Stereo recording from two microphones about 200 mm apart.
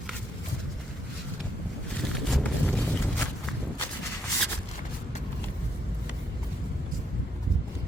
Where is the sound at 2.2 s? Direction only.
Centre (ahead or behind).